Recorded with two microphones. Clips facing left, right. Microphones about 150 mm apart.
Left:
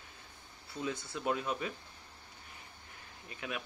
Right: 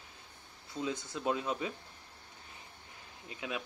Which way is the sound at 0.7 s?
20° right (ahead or behind).